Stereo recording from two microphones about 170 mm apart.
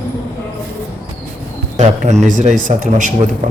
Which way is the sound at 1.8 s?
40° right (ahead or behind).